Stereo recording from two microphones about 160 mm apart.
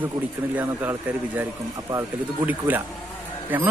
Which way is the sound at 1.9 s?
15° right (ahead or behind).